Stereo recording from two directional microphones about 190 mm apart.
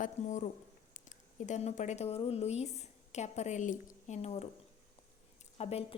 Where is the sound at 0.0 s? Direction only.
40° left (ahead or behind).